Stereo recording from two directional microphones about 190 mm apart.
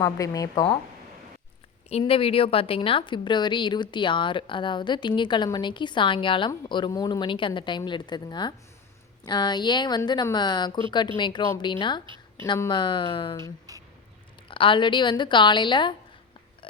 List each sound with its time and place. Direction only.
0.0 s speech: 20° left (ahead or behind)
1.9 s a woman's voice: 30° left (ahead or behind)
12.0 s a sound: 25° right (ahead or behind)
12.5 s a woman's voice: 20° left (ahead or behind)
13.4 s speech: 15° right (ahead or behind)
14.4 s a woman's voice: 25° left (ahead or behind)